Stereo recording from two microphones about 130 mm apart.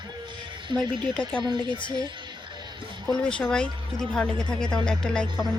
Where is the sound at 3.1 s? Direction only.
5° left (ahead or behind).